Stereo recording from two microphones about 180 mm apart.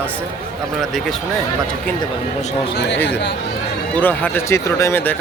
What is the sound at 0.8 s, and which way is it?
Speech, centre (ahead or behind).